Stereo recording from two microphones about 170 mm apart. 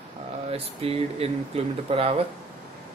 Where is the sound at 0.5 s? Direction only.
35° right (ahead or behind).